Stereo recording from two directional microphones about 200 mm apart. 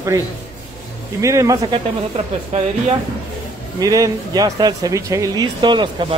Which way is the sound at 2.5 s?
35° right (ahead or behind).